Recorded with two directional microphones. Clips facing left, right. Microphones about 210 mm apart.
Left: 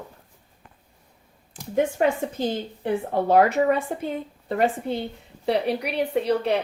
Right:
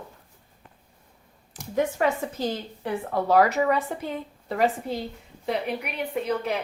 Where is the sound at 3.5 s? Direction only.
50° left (ahead or behind).